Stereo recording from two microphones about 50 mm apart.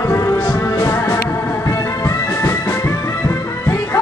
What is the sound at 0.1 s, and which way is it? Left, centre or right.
Music, left.